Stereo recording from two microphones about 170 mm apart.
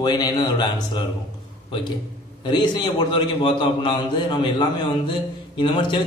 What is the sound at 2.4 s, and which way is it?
A man's voice, 30° left (ahead or behind).